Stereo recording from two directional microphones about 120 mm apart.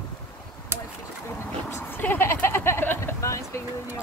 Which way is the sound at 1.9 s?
15° left (ahead or behind).